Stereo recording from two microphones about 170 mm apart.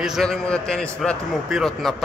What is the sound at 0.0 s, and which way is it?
A man's voice, centre (ahead or behind).